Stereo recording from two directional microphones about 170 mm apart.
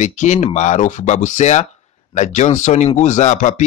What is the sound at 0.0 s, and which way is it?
Speech, 45° left (ahead or behind).